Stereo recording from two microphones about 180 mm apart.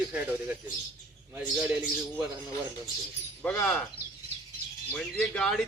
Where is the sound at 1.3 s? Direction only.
10° right (ahead or behind).